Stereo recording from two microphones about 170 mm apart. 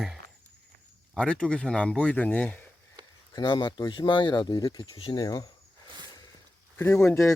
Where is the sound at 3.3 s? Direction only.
25° left (ahead or behind).